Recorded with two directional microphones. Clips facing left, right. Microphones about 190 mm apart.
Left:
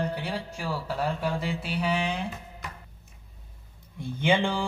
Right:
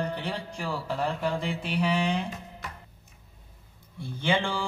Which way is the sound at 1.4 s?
5° left (ahead or behind).